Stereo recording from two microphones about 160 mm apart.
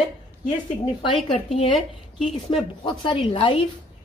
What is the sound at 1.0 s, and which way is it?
Speech, 35° left (ahead or behind).